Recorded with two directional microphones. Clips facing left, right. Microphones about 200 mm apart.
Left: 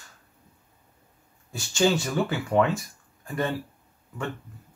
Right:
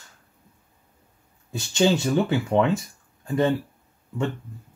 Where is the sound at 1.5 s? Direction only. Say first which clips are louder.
Right 2 dB; 20° right (ahead or behind).